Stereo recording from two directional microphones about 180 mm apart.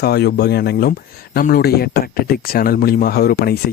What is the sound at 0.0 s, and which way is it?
Speech, 65° left (ahead or behind).